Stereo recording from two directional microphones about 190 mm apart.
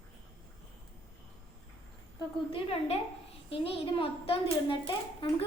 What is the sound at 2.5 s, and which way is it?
A woman's voice, 30° left (ahead or behind).